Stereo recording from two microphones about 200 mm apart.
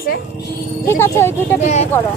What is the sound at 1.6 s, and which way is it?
Speech, 35° left (ahead or behind).